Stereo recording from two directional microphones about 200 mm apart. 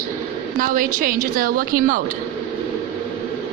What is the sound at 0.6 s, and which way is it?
A woman's voice, 45° right (ahead or behind).